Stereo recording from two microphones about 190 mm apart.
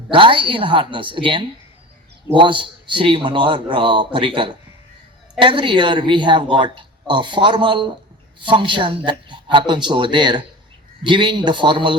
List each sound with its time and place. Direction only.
0.1 s speech: 25° right (ahead or behind)